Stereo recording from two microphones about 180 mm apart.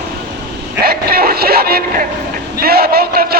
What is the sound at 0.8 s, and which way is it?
Vehicle, 55° right (ahead or behind).